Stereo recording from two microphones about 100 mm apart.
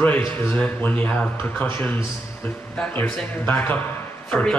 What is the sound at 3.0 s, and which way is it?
A man's voice, 20° left (ahead or behind).